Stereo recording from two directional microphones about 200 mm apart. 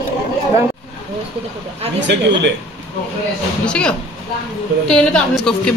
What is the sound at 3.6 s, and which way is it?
Speech, 5° left (ahead or behind).